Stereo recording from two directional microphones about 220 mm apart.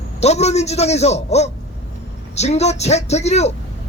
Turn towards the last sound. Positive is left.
turn(degrees=30)  # may be behind; listen again after turning